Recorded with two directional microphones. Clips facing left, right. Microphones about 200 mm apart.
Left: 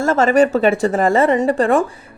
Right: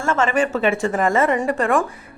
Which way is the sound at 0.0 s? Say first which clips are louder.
Left 6 dB; 40° left (ahead or behind).